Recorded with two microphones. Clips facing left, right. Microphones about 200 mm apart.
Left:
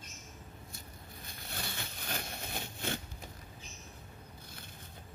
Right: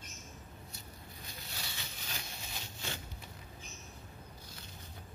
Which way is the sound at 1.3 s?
55° left (ahead or behind).